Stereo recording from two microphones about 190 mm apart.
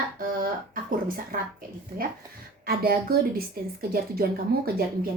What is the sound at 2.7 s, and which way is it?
A woman's voice, 55° right (ahead or behind).